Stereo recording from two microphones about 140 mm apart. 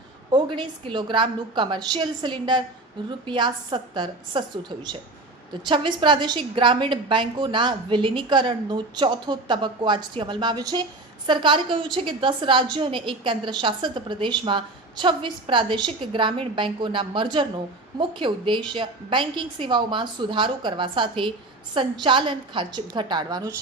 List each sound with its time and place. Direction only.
0.3 s a woman's voice: 35° right (ahead or behind)